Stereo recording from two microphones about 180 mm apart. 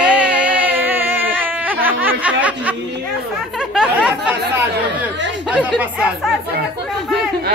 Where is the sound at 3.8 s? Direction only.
5° right (ahead or behind).